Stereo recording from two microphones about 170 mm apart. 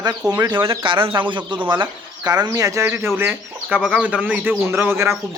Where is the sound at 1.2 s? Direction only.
30° right (ahead or behind).